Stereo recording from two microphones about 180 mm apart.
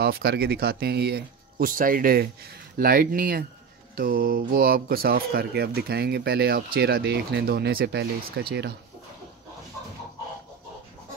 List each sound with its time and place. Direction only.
0.0 s speech: 60° right (ahead or behind)